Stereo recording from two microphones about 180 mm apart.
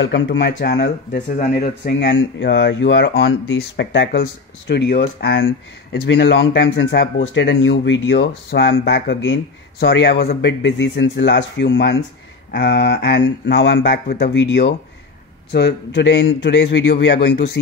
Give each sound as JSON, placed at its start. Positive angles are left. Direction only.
{"t": 0.0, "sound": "speech", "side_deg": 80}
{"t": 14.0, "sound": "speech", "side_deg": 65}